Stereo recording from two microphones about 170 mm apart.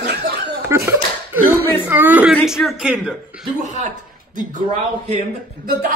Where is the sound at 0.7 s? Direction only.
15° right (ahead or behind).